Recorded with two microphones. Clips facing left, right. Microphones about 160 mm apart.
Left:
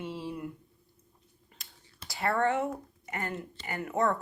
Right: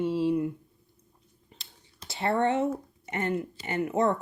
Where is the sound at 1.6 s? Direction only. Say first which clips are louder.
Even; 25° right (ahead or behind).